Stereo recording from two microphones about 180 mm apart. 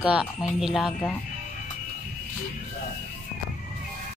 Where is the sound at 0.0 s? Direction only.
5° right (ahead or behind).